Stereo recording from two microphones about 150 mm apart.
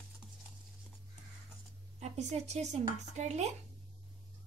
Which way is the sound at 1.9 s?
50° right (ahead or behind).